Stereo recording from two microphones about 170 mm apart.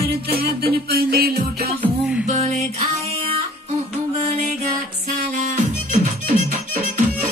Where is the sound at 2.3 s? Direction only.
40° right (ahead or behind).